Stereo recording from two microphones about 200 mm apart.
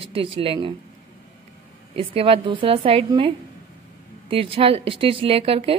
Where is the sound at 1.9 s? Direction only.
25° right (ahead or behind).